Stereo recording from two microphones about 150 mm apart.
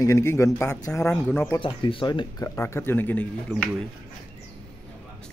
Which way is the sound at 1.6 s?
35° left (ahead or behind).